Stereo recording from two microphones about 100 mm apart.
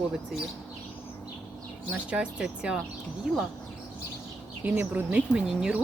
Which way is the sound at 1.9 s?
10° right (ahead or behind).